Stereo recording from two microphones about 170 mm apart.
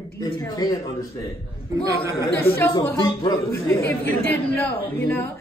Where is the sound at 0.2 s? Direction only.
25° left (ahead or behind).